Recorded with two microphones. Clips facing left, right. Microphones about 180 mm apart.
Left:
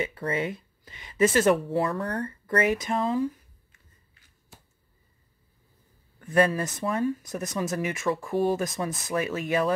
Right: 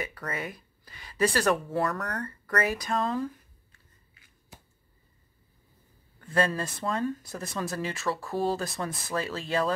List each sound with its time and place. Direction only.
0.0 s speech: 25° left (ahead or behind)
6.2 s speech: 20° left (ahead or behind)